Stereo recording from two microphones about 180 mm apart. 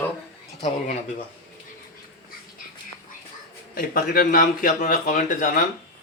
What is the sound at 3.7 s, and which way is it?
A man's voice, 55° left (ahead or behind).